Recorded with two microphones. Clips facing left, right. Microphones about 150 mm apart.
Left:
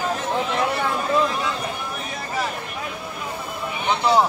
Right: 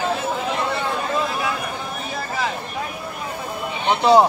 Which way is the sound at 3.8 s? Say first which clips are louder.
Right 5 dB; 25° right (ahead or behind).